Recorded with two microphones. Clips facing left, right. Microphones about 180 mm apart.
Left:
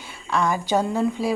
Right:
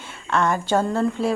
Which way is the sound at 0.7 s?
15° left (ahead or behind).